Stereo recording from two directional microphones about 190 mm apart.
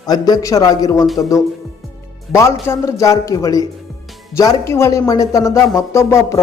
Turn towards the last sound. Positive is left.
turn(degrees=15)  # may be behind; listen again after turning